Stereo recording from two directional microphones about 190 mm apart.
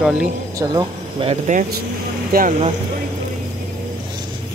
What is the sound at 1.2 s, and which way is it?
Speech, 40° right (ahead or behind).